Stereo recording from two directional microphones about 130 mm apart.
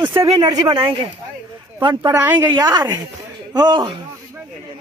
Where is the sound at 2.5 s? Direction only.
30° right (ahead or behind).